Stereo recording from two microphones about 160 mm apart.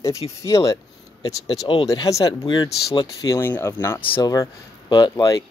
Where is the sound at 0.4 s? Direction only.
20° left (ahead or behind).